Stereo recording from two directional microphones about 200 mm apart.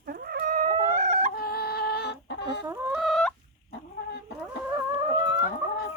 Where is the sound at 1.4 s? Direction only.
50° left (ahead or behind).